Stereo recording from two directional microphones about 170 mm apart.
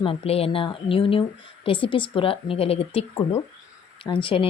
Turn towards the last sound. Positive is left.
turn(degrees=30)  # may be behind; listen again after turning